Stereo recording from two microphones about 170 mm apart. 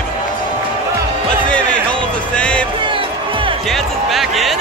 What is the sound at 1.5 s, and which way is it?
Music, 5° left (ahead or behind).